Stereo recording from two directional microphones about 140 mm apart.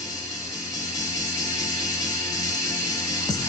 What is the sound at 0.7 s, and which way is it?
Music, 25° left (ahead or behind).